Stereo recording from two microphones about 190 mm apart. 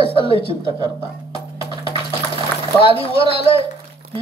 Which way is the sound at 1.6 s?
25° left (ahead or behind).